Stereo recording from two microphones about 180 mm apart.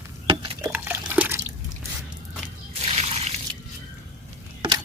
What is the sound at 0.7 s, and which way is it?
Dog, 10° right (ahead or behind).